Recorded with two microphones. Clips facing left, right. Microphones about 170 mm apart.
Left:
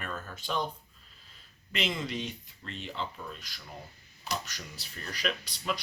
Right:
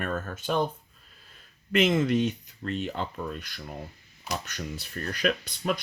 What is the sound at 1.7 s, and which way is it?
Speech, 50° right (ahead or behind).